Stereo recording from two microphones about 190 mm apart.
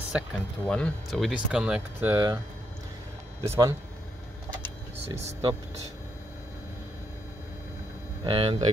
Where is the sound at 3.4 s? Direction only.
15° right (ahead or behind).